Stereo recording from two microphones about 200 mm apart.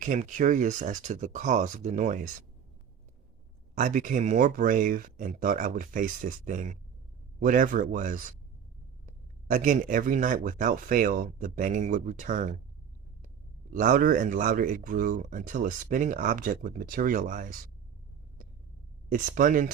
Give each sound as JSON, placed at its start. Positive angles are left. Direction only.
{"t": 0.0, "sound": "speech", "side_deg": -40}
{"t": 3.8, "sound": "speech", "side_deg": -40}
{"t": 13.7, "sound": "speech", "side_deg": -40}
{"t": 19.0, "sound": "speech", "side_deg": -40}